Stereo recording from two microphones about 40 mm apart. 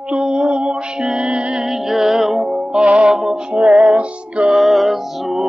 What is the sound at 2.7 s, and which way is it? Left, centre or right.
Music, right.